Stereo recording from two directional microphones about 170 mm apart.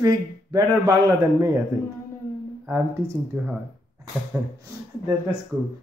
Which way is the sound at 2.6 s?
15° right (ahead or behind).